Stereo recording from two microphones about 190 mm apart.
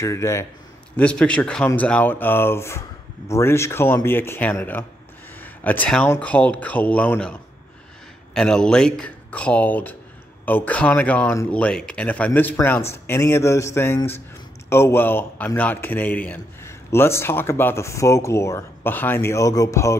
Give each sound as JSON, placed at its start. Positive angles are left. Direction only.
{"t": 0.0, "sound": "a man's voice", "side_deg": 15}
{"t": 8.4, "sound": "a man's voice", "side_deg": 5}